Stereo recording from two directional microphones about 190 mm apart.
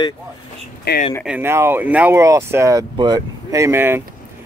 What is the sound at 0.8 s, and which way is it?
Speech, 55° left (ahead or behind).